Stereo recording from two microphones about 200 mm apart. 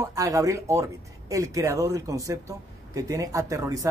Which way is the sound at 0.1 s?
15° right (ahead or behind).